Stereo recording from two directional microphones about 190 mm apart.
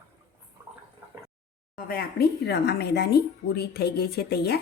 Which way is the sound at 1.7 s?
50° left (ahead or behind).